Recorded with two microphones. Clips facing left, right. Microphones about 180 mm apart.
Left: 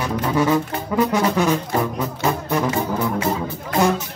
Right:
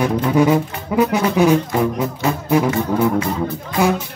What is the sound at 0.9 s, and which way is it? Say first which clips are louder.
Speech: right 2 dB; 10° right (ahead or behind).